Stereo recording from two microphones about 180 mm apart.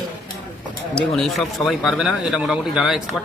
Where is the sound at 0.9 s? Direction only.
5° left (ahead or behind).